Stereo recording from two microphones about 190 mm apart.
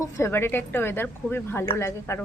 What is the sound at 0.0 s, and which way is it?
Speech, 15° left (ahead or behind).